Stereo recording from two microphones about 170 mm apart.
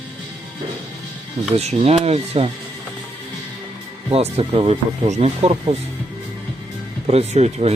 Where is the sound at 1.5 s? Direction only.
35° right (ahead or behind).